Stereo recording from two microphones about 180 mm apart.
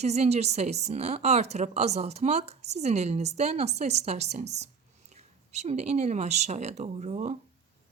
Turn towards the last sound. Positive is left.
turn(degrees=-40)  # may be behind; listen again after turning